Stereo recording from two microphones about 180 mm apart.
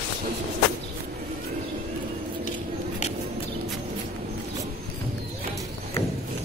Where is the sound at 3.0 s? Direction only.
40° left (ahead or behind).